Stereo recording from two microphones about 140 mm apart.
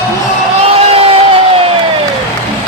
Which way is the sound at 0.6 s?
45° right (ahead or behind).